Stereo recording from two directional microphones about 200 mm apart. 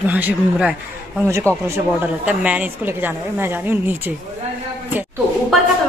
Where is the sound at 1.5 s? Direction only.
10° left (ahead or behind).